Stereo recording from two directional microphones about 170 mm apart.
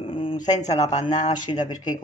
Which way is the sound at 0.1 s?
30° left (ahead or behind).